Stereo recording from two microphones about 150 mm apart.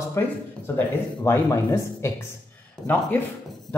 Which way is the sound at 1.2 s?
20° left (ahead or behind).